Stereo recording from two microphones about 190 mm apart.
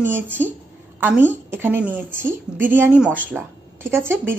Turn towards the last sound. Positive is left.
turn(degrees=-10)  # may be behind; listen again after turning